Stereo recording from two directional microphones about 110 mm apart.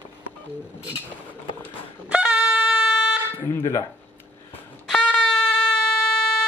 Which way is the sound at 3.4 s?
25° left (ahead or behind).